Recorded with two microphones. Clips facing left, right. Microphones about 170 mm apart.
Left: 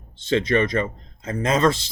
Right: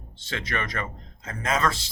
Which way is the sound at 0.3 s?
20° left (ahead or behind).